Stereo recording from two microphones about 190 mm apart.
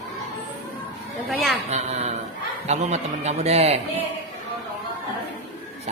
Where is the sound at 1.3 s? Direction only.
Centre (ahead or behind).